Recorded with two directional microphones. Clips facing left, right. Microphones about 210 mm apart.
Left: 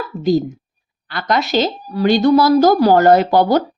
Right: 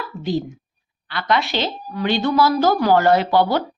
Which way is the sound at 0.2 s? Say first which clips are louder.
Left 8 dB; 40° left (ahead or behind).